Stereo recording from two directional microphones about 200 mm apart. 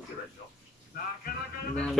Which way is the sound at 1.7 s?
5° left (ahead or behind).